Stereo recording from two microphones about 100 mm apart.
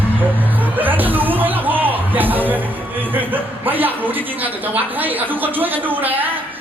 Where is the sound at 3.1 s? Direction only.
20° right (ahead or behind).